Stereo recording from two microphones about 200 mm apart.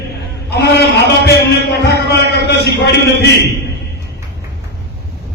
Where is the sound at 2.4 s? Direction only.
55° left (ahead or behind).